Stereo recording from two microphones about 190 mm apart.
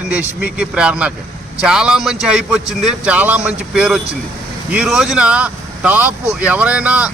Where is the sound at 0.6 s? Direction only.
5° right (ahead or behind).